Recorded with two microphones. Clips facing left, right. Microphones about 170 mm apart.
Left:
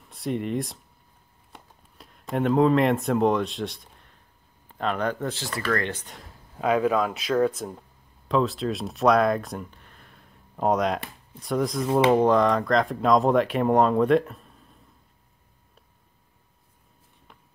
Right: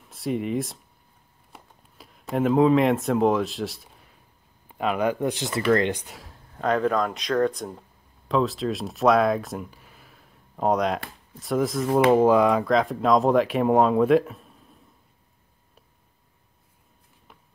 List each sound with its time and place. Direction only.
0.0 s speech: centre (ahead or behind)
1.5 s a sound: centre (ahead or behind)
4.6 s speech: 10° right (ahead or behind)
6.1 s speech: centre (ahead or behind)